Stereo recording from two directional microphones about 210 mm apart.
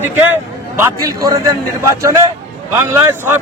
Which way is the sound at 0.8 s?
15° right (ahead or behind).